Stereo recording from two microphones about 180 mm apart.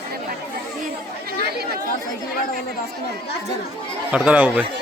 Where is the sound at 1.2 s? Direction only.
60° right (ahead or behind).